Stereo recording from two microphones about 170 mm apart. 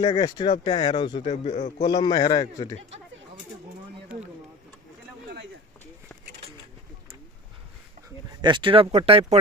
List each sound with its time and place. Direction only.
0.2 s speech: 25° left (ahead or behind)
1.2 s a man's voice: 45° left (ahead or behind)
1.8 s speech: 25° left (ahead or behind)
8.4 s speech: 25° right (ahead or behind)